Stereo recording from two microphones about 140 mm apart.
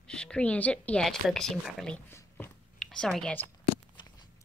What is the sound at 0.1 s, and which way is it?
Speech, 5° left (ahead or behind).